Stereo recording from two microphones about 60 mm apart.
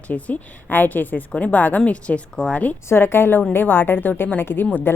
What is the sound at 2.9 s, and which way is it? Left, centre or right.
Speech, left.